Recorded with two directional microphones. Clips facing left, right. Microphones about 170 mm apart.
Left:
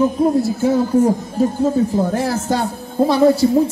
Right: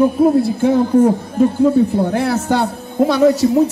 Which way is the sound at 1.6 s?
65° right (ahead or behind).